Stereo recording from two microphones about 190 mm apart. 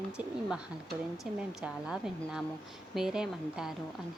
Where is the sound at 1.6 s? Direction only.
5° right (ahead or behind).